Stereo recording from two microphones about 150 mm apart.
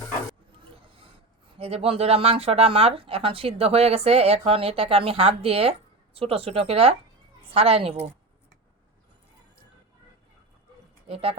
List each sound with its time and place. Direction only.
0.6 s a sound: 35° right (ahead or behind)
1.5 s speech: 40° right (ahead or behind)
11.1 s speech: 40° right (ahead or behind)